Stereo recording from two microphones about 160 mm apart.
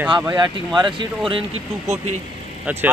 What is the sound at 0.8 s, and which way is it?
Speech, 30° right (ahead or behind).